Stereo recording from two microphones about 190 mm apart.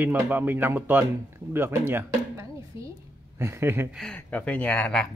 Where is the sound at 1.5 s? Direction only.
10° right (ahead or behind).